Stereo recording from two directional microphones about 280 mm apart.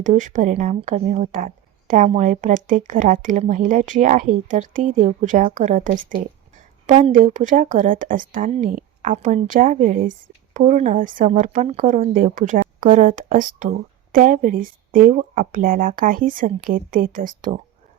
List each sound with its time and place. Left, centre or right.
0.0 s speech: right